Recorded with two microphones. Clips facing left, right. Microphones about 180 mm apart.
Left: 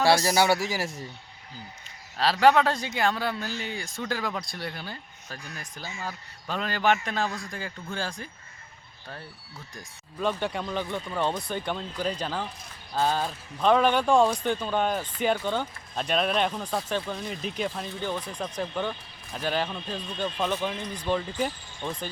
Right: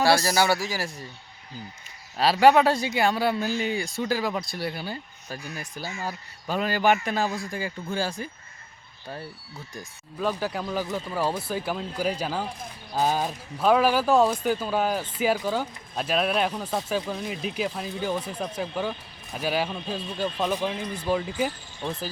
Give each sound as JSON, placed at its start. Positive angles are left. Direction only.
{"t": 0.3, "sound": "a man's voice", "side_deg": 25}
{"t": 2.1, "sound": "speech", "side_deg": -10}
{"t": 9.7, "sound": "speech", "side_deg": 0}